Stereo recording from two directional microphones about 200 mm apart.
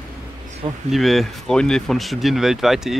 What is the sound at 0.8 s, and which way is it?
Speech, centre (ahead or behind).